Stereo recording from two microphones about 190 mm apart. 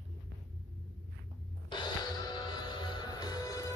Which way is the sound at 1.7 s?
25° left (ahead or behind).